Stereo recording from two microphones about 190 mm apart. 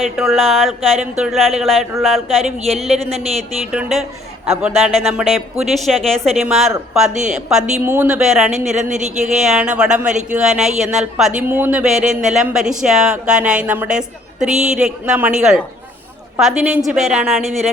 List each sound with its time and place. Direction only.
0.0 s speech: centre (ahead or behind)
2.9 s a woman's voice: 35° right (ahead or behind)
3.7 s speech: centre (ahead or behind)
5.0 s speech: centre (ahead or behind)
8.4 s a woman's voice: 35° right (ahead or behind)
9.4 s speech: 5° right (ahead or behind)
10.1 s a woman's voice: 40° right (ahead or behind)
10.3 s speech: 5° right (ahead or behind)